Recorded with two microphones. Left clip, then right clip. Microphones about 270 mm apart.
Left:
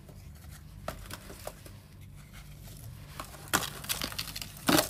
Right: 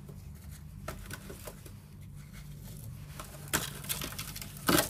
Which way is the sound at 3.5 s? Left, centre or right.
Left.